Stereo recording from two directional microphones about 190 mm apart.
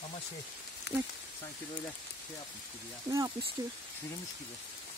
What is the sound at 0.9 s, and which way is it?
Speech, 65° left (ahead or behind).